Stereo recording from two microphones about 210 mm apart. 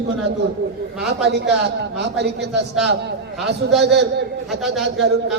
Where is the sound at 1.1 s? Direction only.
55° right (ahead or behind).